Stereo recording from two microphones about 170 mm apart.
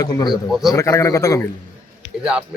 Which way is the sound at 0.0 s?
20° left (ahead or behind).